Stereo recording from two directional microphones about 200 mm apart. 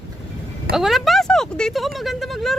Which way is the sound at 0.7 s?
Centre (ahead or behind).